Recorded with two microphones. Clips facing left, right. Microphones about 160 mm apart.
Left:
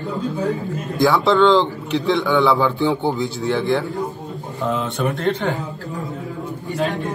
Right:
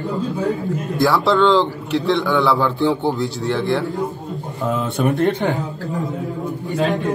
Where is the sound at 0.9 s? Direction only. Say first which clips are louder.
Left 1 dB; centre (ahead or behind).